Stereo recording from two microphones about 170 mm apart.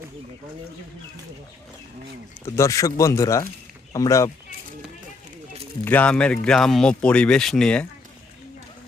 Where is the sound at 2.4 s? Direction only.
15° left (ahead or behind).